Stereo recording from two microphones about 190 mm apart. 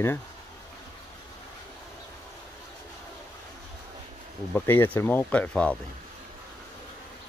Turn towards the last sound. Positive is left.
turn(degrees=5)  # may be behind; listen again after turning